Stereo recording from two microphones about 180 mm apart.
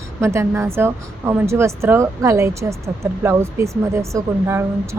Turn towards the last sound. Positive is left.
turn(degrees=-15)  # may be behind; listen again after turning